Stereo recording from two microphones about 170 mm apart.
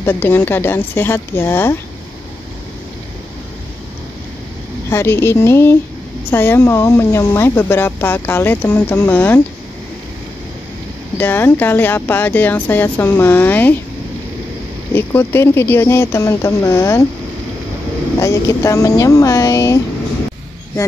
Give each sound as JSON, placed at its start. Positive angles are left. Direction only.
{"t": 0.0, "sound": "speech", "side_deg": 10}
{"t": 4.8, "sound": "speech", "side_deg": 15}
{"t": 11.1, "sound": "speech", "side_deg": 10}
{"t": 14.9, "sound": "speech", "side_deg": 15}
{"t": 18.2, "sound": "speech", "side_deg": 20}